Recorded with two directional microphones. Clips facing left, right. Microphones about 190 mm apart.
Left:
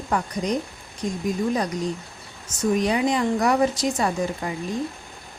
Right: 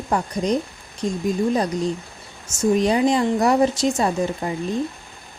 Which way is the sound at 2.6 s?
30° right (ahead or behind).